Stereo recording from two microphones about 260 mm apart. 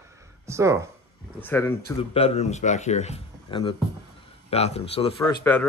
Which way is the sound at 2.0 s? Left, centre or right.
Left.